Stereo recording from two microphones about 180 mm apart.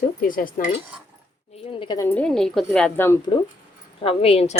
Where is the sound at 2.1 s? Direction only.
5° left (ahead or behind).